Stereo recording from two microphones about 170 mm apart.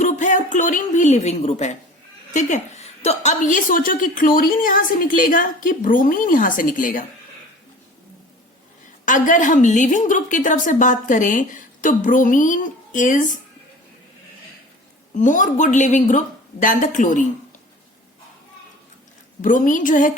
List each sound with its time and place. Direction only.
0.0 s a sound: 45° left (ahead or behind)
2.3 s a woman's voice: 45° left (ahead or behind)
9.0 s a woman's voice: 50° left (ahead or behind)
15.1 s a woman's voice: 50° left (ahead or behind)
19.4 s a woman's voice: 50° left (ahead or behind)